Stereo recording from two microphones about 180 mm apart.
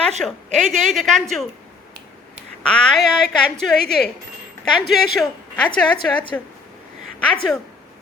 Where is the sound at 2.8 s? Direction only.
5° left (ahead or behind).